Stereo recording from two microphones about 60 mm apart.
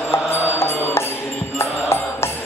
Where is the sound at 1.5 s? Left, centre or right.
Left.